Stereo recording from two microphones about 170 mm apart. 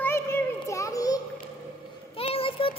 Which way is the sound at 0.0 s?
15° left (ahead or behind).